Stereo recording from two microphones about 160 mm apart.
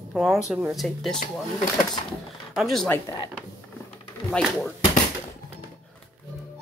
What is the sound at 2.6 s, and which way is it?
Speech, centre (ahead or behind).